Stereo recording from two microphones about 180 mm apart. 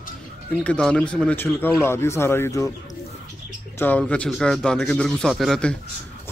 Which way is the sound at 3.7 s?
10° left (ahead or behind).